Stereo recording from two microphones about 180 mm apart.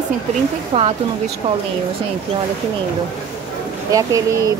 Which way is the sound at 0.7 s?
30° right (ahead or behind).